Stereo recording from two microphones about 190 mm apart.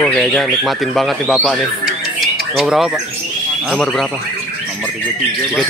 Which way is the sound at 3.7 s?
Centre (ahead or behind).